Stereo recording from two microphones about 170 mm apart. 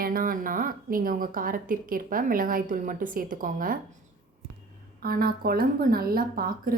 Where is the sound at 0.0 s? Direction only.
55° right (ahead or behind).